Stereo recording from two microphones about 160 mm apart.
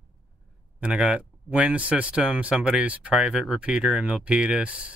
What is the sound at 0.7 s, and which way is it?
Speech, 5° right (ahead or behind).